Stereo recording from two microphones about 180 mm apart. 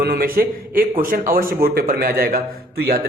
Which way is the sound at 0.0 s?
55° right (ahead or behind).